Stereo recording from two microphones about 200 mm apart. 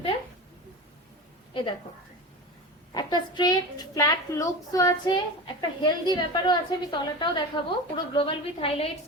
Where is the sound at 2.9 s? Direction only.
20° left (ahead or behind).